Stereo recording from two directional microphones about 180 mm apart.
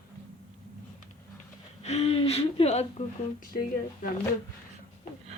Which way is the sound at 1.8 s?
35° left (ahead or behind).